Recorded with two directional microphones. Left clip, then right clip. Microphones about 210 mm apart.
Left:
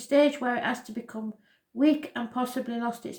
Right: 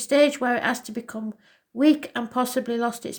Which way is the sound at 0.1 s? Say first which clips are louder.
Right 4 dB; 50° right (ahead or behind).